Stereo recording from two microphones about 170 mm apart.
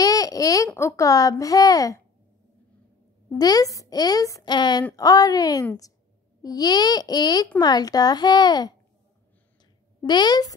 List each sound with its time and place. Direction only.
0.0 s a sound: 20° left (ahead or behind)
0.7 s a child's voice: 15° left (ahead or behind)
3.3 s a child's voice: 20° left (ahead or behind)
10.0 s a child's voice: 25° left (ahead or behind)